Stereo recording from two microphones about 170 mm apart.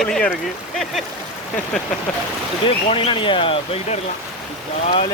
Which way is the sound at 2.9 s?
30° left (ahead or behind).